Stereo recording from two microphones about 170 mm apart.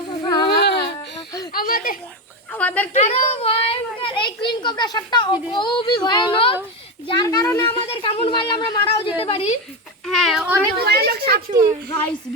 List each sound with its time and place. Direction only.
0.3 s a sound: 25° left (ahead or behind)
0.5 s a sound: 75° left (ahead or behind)
1.5 s a sound: 55° left (ahead or behind)
2.5 s a woman's voice: 10° left (ahead or behind)
2.9 s a child's voice: 40° left (ahead or behind); by 7.8 s 15° left (ahead or behind)
8.0 s a child's voice: 35° left (ahead or behind)
9.2 s speech: 35° left (ahead or behind)
10.1 s speech: centre (ahead or behind)
10.8 s speech: 70° right (ahead or behind)